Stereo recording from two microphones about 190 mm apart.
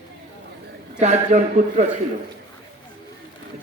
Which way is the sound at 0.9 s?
35° right (ahead or behind).